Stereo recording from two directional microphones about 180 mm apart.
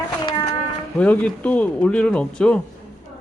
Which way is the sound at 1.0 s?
10° left (ahead or behind).